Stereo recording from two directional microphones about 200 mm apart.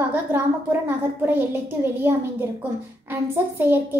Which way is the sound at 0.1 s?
10° right (ahead or behind).